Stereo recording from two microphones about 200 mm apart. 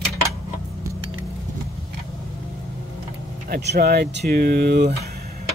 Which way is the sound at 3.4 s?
50° right (ahead or behind).